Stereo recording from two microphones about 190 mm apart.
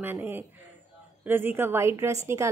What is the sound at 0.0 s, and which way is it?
A woman's voice, 10° right (ahead or behind).